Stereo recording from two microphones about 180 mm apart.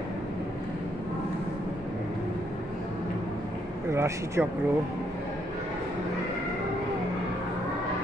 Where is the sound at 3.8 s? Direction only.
15° right (ahead or behind).